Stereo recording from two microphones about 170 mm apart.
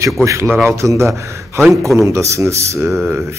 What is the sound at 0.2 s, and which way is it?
A man's voice, 15° right (ahead or behind).